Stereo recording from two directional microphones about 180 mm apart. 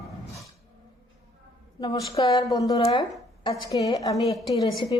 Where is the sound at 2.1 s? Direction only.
20° left (ahead or behind).